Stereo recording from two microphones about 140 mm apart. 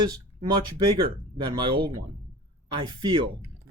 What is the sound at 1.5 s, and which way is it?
Speech, 35° right (ahead or behind).